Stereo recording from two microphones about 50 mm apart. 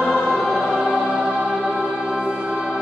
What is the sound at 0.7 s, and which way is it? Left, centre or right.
Choir, centre.